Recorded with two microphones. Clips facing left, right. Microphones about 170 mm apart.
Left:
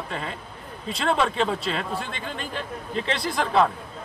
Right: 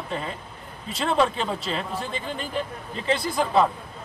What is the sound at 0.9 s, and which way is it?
A man's voice, 5° right (ahead or behind).